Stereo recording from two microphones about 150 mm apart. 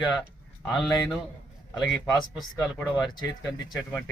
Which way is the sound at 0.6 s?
Centre (ahead or behind).